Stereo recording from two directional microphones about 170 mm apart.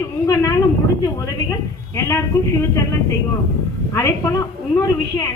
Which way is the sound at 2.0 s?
15° left (ahead or behind).